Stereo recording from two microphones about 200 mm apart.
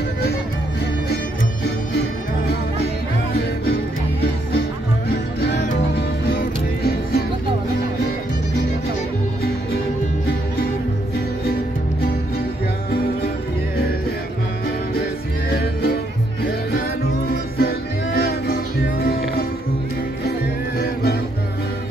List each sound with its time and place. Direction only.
5.4 s music: 60° left (ahead or behind)
15.5 s music: 50° left (ahead or behind)
20.8 s music: 50° left (ahead or behind)